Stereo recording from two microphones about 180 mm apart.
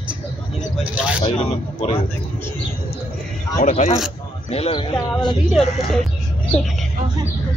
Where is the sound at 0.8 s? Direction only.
5° right (ahead or behind).